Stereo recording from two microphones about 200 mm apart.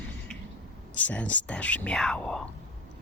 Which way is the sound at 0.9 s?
5° left (ahead or behind).